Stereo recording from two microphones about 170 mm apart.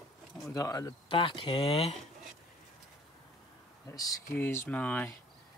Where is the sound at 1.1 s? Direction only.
30° left (ahead or behind).